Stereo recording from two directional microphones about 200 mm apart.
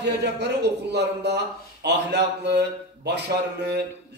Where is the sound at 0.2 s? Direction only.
55° right (ahead or behind).